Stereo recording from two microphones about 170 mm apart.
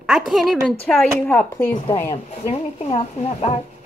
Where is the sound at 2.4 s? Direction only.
35° left (ahead or behind).